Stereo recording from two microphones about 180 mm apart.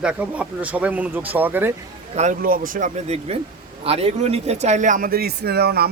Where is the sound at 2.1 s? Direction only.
40° right (ahead or behind); by 5.8 s 60° right (ahead or behind).